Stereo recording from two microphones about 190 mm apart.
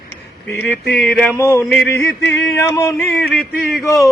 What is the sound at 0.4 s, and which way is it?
Music, 10° left (ahead or behind).